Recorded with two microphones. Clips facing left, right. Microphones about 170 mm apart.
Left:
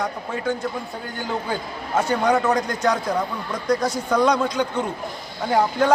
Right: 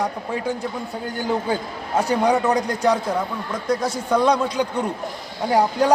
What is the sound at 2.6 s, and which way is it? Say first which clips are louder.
Speech: right 2 dB; 35° right (ahead or behind).